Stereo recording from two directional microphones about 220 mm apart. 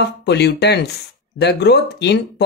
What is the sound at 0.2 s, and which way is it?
Speech, 50° left (ahead or behind).